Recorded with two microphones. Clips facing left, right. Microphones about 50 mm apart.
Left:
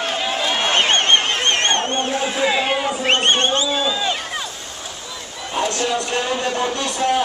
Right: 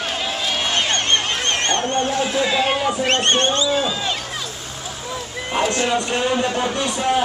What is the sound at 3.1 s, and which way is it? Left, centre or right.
Speech, left.